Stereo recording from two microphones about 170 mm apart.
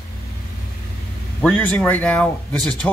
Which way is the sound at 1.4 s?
10° left (ahead or behind).